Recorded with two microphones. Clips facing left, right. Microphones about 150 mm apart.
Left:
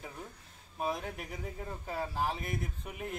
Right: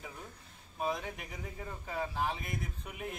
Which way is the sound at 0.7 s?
Centre (ahead or behind).